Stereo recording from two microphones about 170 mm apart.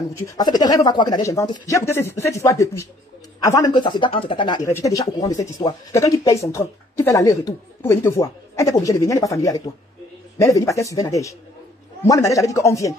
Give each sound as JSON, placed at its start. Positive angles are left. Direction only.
{"t": 0.4, "sound": "speech", "side_deg": 25}